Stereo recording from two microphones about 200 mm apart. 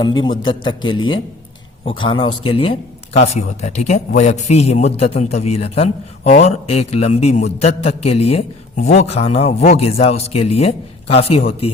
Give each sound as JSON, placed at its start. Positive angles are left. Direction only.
{"t": 0.2, "sound": "a man's voice", "side_deg": 25}
{"t": 0.9, "sound": "a man's voice", "side_deg": 90}
{"t": 1.8, "sound": "a man's voice", "side_deg": 25}